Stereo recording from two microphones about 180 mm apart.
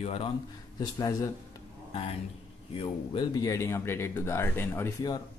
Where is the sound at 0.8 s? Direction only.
20° left (ahead or behind).